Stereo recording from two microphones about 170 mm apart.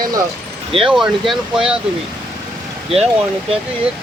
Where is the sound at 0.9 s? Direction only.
5° right (ahead or behind).